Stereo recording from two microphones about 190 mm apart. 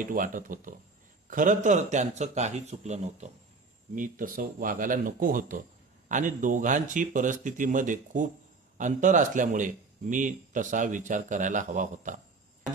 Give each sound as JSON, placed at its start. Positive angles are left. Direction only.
{"t": 0.0, "sound": "speech", "side_deg": -45}